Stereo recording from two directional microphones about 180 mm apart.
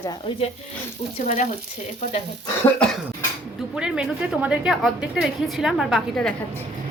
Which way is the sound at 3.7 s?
5° right (ahead or behind).